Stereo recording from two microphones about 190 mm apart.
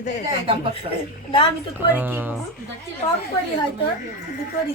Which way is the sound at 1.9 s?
10° right (ahead or behind).